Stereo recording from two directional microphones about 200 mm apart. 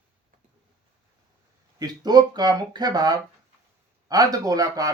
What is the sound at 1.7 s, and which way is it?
Speech, 20° right (ahead or behind).